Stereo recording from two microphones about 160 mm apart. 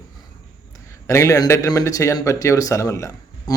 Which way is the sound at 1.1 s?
20° left (ahead or behind).